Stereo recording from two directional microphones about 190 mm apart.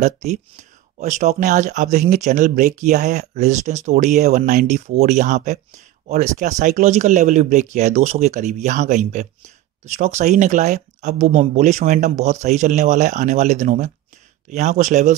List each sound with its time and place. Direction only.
0.0 s speech: 35° right (ahead or behind)